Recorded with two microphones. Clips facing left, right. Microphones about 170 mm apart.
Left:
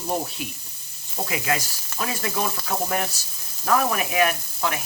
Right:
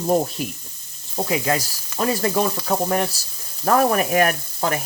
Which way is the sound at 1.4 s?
35° right (ahead or behind).